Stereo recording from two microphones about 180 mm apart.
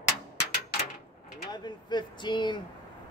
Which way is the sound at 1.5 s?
25° left (ahead or behind).